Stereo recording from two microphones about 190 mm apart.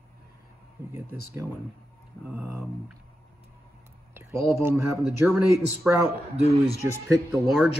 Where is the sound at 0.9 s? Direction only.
15° right (ahead or behind).